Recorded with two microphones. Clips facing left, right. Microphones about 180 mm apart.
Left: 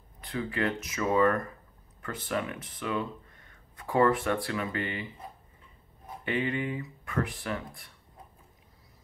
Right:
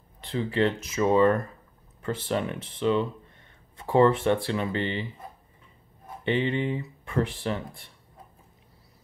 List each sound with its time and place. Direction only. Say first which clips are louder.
0.2 s speech: right 6 dB; 30° right (ahead or behind)
6.2 s speech: right 5 dB; 25° right (ahead or behind)